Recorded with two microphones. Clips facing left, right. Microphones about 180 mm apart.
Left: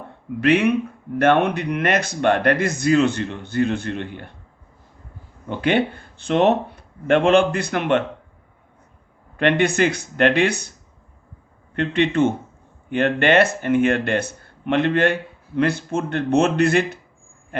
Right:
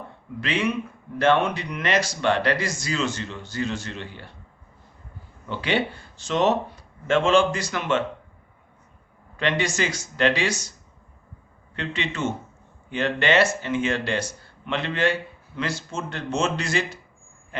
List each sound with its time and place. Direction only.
0.3 s speech: 60° left (ahead or behind)
5.5 s speech: 50° left (ahead or behind)
9.4 s speech: 60° left (ahead or behind)
17.5 s a sound: 55° left (ahead or behind)